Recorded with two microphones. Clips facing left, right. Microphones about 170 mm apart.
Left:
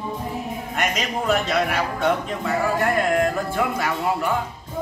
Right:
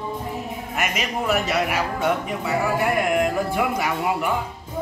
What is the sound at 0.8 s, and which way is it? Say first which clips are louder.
A man's voice: left 1 dB; 5° right (ahead or behind).